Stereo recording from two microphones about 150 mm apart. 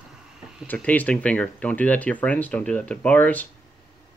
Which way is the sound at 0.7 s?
10° left (ahead or behind).